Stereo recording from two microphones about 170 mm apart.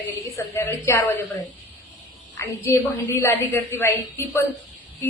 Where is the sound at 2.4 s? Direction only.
15° left (ahead or behind).